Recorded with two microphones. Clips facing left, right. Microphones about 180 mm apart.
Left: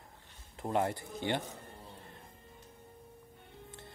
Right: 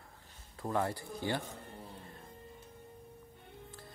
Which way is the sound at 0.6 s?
20° left (ahead or behind).